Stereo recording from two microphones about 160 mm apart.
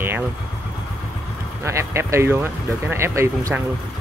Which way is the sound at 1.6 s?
15° right (ahead or behind).